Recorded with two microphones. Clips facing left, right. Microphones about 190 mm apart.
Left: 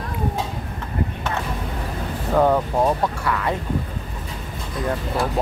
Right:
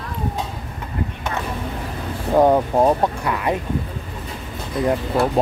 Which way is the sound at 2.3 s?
20° right (ahead or behind).